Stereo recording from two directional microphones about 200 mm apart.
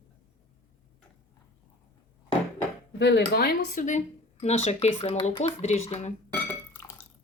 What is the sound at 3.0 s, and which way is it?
Speech, 60° left (ahead or behind).